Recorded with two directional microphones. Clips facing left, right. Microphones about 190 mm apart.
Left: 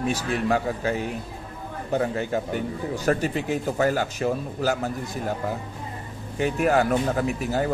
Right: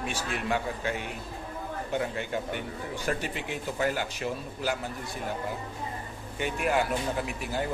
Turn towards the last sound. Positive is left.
turn(degrees=45)  # may be behind; listen again after turning